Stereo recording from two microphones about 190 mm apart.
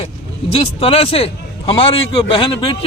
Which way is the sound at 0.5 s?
30° left (ahead or behind).